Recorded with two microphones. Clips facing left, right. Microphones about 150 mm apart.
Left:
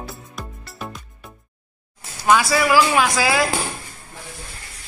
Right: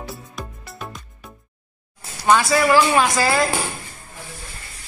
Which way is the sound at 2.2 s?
5° left (ahead or behind).